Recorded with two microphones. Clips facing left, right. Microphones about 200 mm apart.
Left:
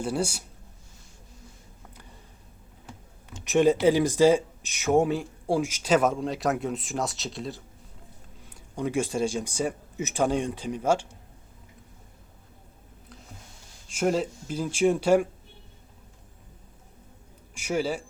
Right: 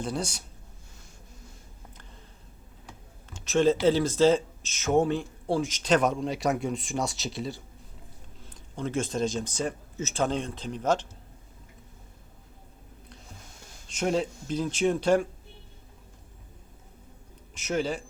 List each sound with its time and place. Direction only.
0.0 s speech: 10° left (ahead or behind)
3.2 s a sound: 15° left (ahead or behind)
3.8 s speech: 15° left (ahead or behind); by 7.6 s centre (ahead or behind)
8.4 s speech: 10° left (ahead or behind)
13.8 s speech: 5° left (ahead or behind)
17.5 s speech: 10° left (ahead or behind)